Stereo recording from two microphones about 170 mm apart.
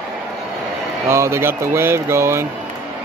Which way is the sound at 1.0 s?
15° right (ahead or behind).